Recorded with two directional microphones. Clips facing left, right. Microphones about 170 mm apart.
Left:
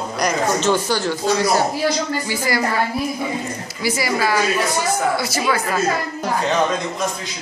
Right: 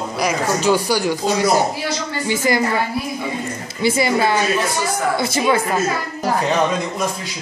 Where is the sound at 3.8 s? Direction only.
25° right (ahead or behind).